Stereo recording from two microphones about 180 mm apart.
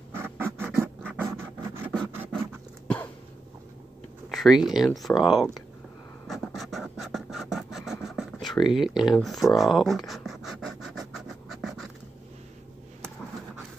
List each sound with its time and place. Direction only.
0.1 s scratch: 15° right (ahead or behind)
4.3 s speech: centre (ahead or behind)
6.2 s scratch: centre (ahead or behind)
8.7 s writing: centre (ahead or behind)